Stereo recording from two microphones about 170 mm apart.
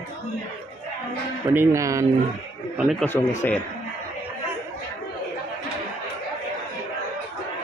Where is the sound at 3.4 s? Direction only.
10° left (ahead or behind).